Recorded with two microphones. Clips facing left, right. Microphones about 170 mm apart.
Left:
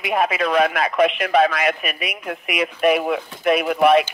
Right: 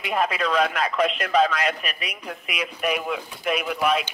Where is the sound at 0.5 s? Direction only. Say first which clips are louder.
Left 4 dB; 60° left (ahead or behind).